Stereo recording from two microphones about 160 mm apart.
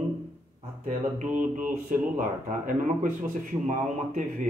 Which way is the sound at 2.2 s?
50° right (ahead or behind).